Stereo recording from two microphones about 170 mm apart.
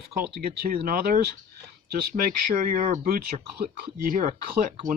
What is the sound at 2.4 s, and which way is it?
Speech, 55° right (ahead or behind).